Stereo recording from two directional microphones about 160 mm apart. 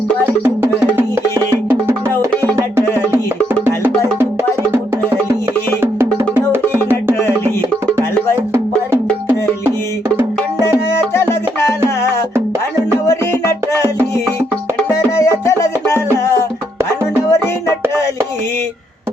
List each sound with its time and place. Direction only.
0.4 s music: 15° right (ahead or behind)
6.3 s music: 10° right (ahead or behind)
10.9 s music: 15° left (ahead or behind)
13.1 s music: 15° left (ahead or behind)